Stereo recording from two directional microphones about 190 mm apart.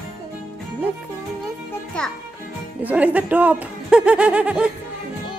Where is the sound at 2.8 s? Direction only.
10° right (ahead or behind).